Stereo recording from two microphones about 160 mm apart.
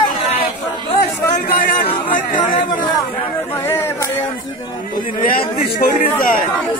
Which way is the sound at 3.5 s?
15° left (ahead or behind).